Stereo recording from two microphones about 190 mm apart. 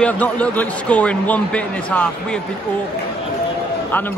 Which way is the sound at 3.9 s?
10° left (ahead or behind).